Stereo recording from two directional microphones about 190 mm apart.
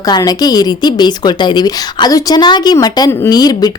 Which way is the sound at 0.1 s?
20° left (ahead or behind).